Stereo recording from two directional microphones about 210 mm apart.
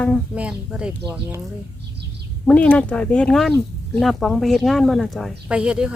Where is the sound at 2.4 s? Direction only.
5° left (ahead or behind).